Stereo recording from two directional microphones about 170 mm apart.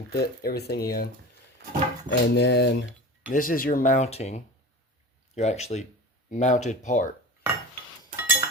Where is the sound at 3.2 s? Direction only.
55° left (ahead or behind).